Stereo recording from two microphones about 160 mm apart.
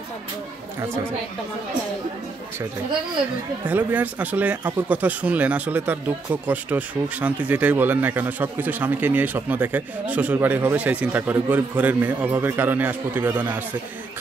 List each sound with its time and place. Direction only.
0.7 s speech: 15° right (ahead or behind)
3.6 s speech: 10° right (ahead or behind)